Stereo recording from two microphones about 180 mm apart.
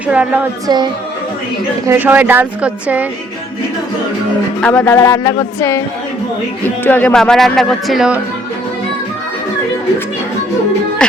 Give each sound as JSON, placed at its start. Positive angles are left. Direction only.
{"t": 0.1, "sound": "speech", "side_deg": -5}
{"t": 0.7, "sound": "speech", "side_deg": -25}
{"t": 1.9, "sound": "speech", "side_deg": -10}
{"t": 4.6, "sound": "speech", "side_deg": 10}
{"t": 4.9, "sound": "speech", "side_deg": 20}
{"t": 6.8, "sound": "speech", "side_deg": 10}
{"t": 11.0, "sound": "music", "side_deg": 5}